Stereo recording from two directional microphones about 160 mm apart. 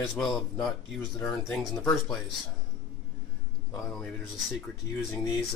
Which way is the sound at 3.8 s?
Centre (ahead or behind).